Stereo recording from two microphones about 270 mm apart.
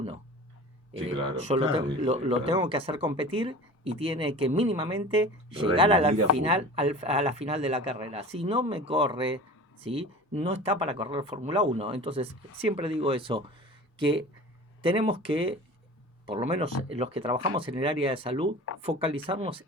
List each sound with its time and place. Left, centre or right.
1.0 s speech: centre